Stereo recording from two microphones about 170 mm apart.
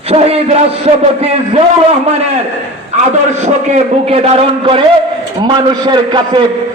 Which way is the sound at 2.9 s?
40° right (ahead or behind).